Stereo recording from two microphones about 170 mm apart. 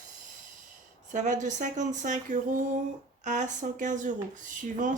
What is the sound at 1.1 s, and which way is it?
Speech, 45° right (ahead or behind).